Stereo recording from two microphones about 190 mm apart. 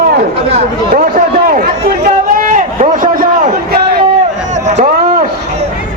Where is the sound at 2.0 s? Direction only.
40° right (ahead or behind).